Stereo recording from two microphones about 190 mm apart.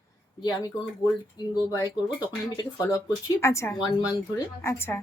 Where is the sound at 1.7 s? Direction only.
20° left (ahead or behind).